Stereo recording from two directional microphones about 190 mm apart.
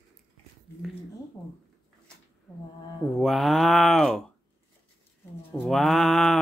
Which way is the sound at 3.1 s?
Centre (ahead or behind).